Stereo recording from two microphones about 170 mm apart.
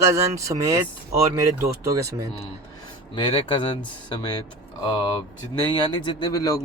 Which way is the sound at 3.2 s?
30° left (ahead or behind).